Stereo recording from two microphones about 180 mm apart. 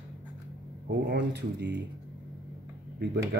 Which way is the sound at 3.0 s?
65° right (ahead or behind).